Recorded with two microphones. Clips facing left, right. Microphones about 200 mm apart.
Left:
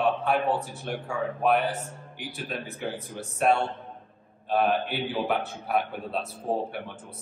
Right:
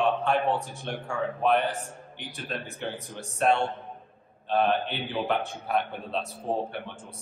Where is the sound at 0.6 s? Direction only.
15° right (ahead or behind).